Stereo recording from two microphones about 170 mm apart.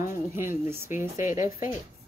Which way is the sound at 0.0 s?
15° right (ahead or behind).